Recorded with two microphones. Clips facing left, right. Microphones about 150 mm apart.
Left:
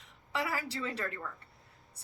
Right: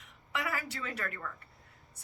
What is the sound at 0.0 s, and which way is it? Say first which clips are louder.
A woman's voice: left 1 dB; 30° left (ahead or behind).